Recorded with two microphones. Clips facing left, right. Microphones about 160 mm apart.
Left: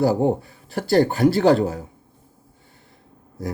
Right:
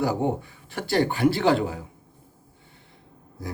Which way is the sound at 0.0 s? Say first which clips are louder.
Left 6 dB; 40° left (ahead or behind).